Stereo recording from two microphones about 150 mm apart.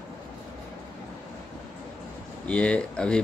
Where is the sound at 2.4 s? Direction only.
5° left (ahead or behind).